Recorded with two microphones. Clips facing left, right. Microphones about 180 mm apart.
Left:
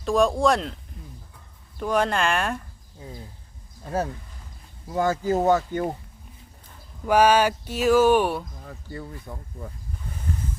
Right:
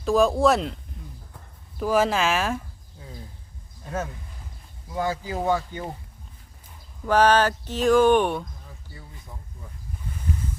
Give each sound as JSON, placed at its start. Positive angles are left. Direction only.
{"t": 0.0, "sound": "speech", "side_deg": 0}
{"t": 1.8, "sound": "speech", "side_deg": -5}
{"t": 4.9, "sound": "speech", "side_deg": 45}
{"t": 7.0, "sound": "speech", "side_deg": 10}
{"t": 8.6, "sound": "a sound", "side_deg": 65}
{"t": 9.3, "sound": "speech", "side_deg": 55}